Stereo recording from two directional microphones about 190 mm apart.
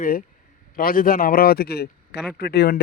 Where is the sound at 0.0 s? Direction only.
50° left (ahead or behind).